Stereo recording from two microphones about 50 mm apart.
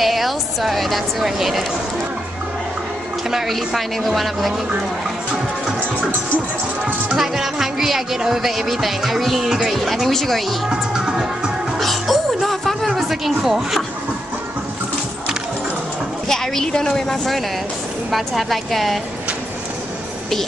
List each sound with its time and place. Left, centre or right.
0.0 s speech: centre
3.3 s speech: centre
7.2 s speech: centre
11.8 s music: centre
16.3 s a woman's voice: centre